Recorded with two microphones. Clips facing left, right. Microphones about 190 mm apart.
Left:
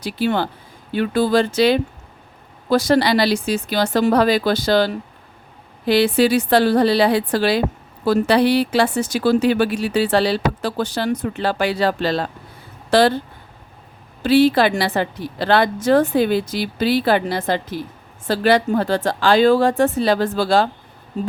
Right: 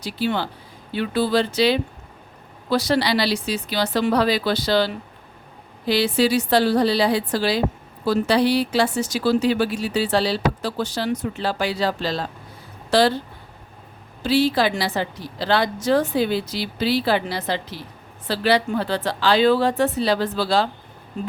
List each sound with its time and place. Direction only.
0.0 s a woman's voice: 55° left (ahead or behind)
14.2 s a woman's voice: 55° left (ahead or behind)